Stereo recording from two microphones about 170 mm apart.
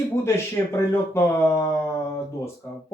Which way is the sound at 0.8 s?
15° left (ahead or behind).